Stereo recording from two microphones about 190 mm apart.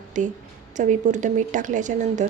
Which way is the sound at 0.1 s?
40° right (ahead or behind).